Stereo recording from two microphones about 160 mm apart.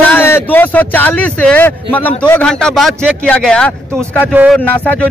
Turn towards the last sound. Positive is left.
turn(degrees=10)  # may be behind; listen again after turning